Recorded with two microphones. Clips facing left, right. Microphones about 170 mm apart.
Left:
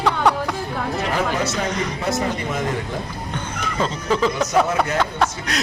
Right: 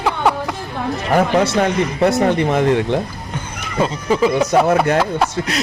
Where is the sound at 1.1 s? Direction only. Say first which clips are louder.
Right 11 dB; 60° right (ahead or behind).